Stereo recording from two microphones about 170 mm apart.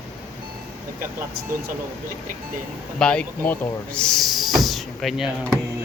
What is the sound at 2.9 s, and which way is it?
Speech, 5° left (ahead or behind).